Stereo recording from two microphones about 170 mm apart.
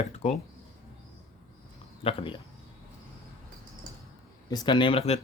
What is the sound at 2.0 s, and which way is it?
Speech, 35° left (ahead or behind).